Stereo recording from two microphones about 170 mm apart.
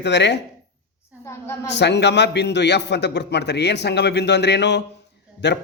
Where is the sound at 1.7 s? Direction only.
90° left.